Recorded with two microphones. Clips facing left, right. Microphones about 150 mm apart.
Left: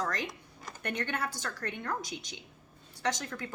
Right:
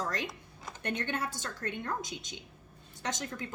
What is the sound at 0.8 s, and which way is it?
Speech, 25° right (ahead or behind).